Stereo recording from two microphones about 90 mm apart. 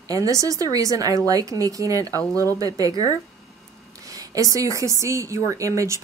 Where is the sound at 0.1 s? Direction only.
40° right (ahead or behind).